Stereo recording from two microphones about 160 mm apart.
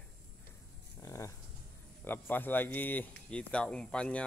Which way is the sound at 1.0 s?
20° left (ahead or behind).